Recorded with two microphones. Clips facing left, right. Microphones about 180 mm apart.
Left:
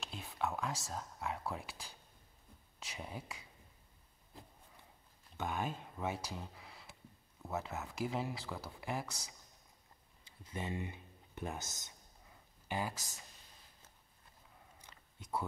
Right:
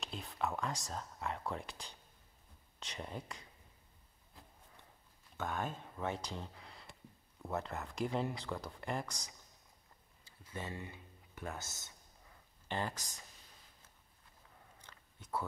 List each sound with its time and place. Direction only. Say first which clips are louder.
0.0 s speech: even; centre (ahead or behind)
5.4 s speech: left 1 dB; 10° left (ahead or behind)
10.2 s speech: left 2 dB; 20° left (ahead or behind)
14.8 s chewing: left 1 dB; 10° left (ahead or behind)